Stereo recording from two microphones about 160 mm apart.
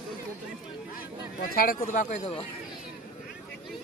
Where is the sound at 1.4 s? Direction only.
65° left (ahead or behind); by 2.4 s 45° left (ahead or behind).